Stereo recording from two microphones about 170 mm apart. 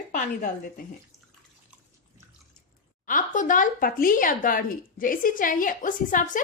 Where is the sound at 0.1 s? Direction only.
50° left (ahead or behind).